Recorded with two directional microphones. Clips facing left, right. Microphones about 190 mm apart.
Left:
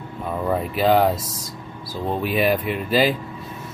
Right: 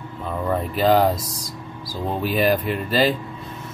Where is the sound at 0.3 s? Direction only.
5° left (ahead or behind).